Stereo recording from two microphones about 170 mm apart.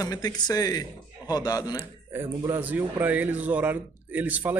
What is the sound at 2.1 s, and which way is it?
A man's voice, 15° right (ahead or behind).